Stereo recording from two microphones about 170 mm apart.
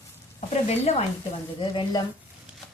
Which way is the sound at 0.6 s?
40° left (ahead or behind).